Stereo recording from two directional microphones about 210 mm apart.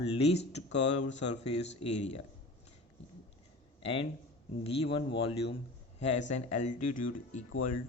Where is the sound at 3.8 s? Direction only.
25° left (ahead or behind).